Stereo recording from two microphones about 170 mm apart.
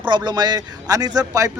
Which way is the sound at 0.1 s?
25° right (ahead or behind).